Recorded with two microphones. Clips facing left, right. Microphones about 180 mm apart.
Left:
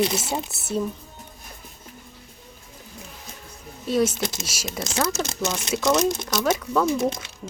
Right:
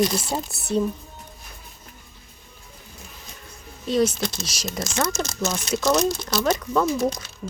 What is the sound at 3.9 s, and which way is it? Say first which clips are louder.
Speech: right 1 dB; 5° left (ahead or behind).